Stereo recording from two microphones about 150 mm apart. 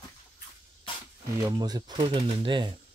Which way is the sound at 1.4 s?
25° right (ahead or behind).